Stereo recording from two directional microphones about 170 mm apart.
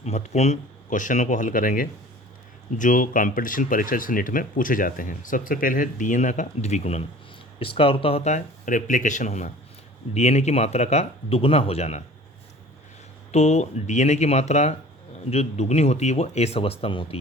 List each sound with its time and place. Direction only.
0.0 s speech: 40° left (ahead or behind)
13.3 s speech: 40° left (ahead or behind)